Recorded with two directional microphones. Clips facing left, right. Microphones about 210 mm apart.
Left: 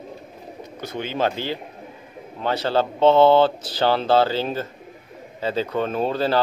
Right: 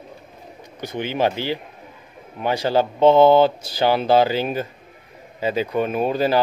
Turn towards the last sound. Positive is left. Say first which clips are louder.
# right 2 dB
turn(degrees=-15)  # may be behind; listen again after turning